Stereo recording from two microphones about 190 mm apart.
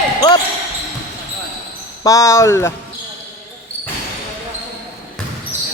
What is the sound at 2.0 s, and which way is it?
Speech, 15° left (ahead or behind).